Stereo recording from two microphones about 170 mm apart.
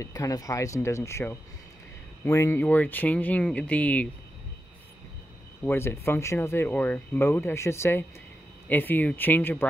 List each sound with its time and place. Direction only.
0.0 s speech: 20° left (ahead or behind)
5.6 s speech: 15° left (ahead or behind)